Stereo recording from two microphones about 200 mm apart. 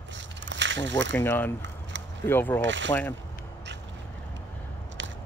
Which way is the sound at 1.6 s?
65° right (ahead or behind).